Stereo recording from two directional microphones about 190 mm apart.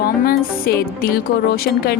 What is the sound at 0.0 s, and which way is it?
A woman's voice, 55° left (ahead or behind).